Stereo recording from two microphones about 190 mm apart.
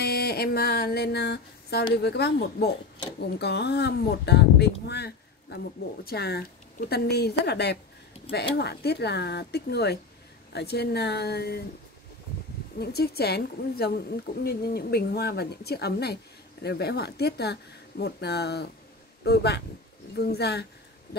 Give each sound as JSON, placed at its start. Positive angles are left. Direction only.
{"t": 0.0, "sound": "a sound", "side_deg": 55}
{"t": 2.0, "sound": "a woman's voice", "side_deg": 60}
{"t": 12.7, "sound": "a woman's voice", "side_deg": 55}